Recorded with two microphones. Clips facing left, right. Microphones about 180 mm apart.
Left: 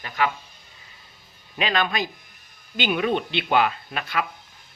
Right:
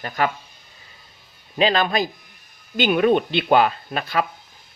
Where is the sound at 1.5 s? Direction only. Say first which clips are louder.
Right 5 dB; 35° right (ahead or behind).